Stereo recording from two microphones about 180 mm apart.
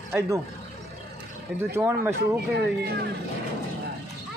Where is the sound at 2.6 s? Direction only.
65° right (ahead or behind).